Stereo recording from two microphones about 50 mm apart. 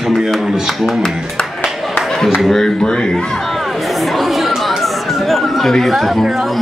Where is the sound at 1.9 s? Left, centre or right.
Centre.